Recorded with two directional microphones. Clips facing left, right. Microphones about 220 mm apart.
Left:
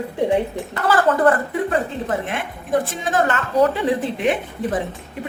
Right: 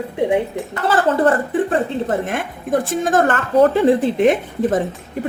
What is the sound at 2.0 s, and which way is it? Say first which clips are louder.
A woman's voice: right 3 dB; 45° right (ahead or behind).